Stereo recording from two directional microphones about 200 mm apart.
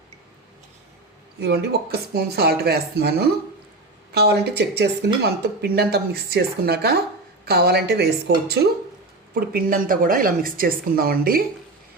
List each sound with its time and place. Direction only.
1.4 s speech: 55° right (ahead or behind)
9.3 s speech: 45° right (ahead or behind)